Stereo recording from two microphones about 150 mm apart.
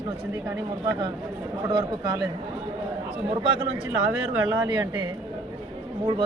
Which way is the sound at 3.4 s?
35° right (ahead or behind).